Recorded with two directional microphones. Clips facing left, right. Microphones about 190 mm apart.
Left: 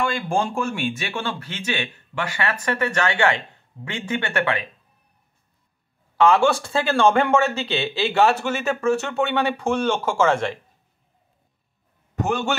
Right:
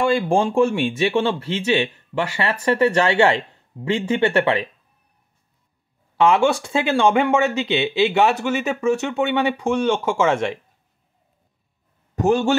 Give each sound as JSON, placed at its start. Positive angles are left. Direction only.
{"t": 0.0, "sound": "speech", "side_deg": -30}
{"t": 6.1, "sound": "speech", "side_deg": -20}
{"t": 12.2, "sound": "speech", "side_deg": -40}